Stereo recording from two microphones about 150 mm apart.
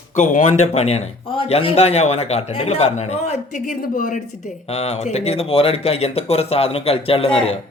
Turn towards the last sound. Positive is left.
turn(degrees=40)  # may be behind; listen again after turning